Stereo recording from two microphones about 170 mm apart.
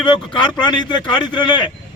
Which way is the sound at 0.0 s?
25° left (ahead or behind).